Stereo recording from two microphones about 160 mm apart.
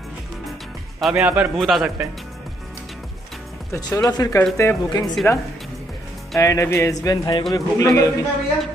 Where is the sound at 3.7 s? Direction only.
20° left (ahead or behind).